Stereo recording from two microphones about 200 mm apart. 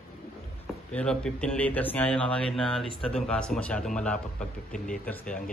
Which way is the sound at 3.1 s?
5° left (ahead or behind).